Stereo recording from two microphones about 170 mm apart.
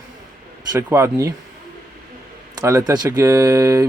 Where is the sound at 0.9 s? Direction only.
15° right (ahead or behind).